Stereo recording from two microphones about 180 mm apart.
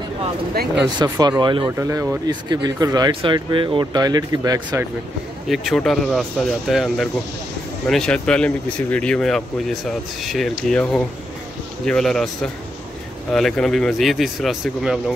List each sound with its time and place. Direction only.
0.9 s speech: 20° right (ahead or behind)
5.5 s speech: centre (ahead or behind)